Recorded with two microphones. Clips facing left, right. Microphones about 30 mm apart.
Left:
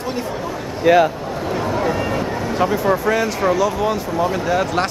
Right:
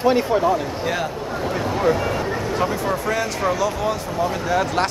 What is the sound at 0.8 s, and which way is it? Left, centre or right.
Speech, left.